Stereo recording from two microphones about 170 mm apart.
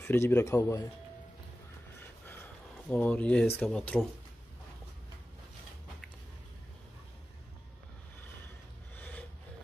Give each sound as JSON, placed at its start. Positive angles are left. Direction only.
{"t": 0.0, "sound": "speech", "side_deg": 15}
{"t": 2.2, "sound": "a sound", "side_deg": 10}
{"t": 3.5, "sound": "speech", "side_deg": 5}
{"t": 8.9, "sound": "rub", "side_deg": 10}